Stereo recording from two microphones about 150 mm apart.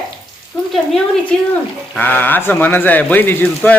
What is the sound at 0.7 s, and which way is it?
Speech, 5° left (ahead or behind).